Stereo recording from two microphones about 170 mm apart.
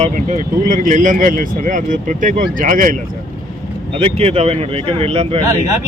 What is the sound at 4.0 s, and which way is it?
Speech, 35° right (ahead or behind).